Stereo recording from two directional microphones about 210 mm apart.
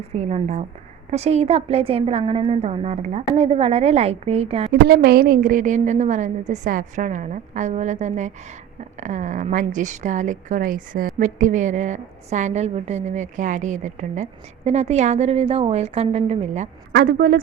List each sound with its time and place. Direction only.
0.2 s a woman's voice: 30° right (ahead or behind)
4.7 s a woman's voice: 50° right (ahead or behind); by 16.6 s 30° right (ahead or behind)
16.9 s a woman's voice: 50° right (ahead or behind)